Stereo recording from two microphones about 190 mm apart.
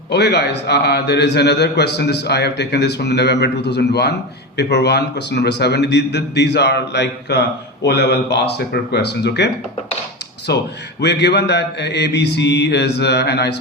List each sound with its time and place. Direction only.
0.1 s a man's voice: 60° left (ahead or behind)
10.5 s a man's voice: 60° left (ahead or behind)